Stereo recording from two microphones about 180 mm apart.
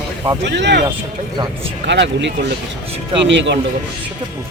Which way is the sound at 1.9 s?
80° right.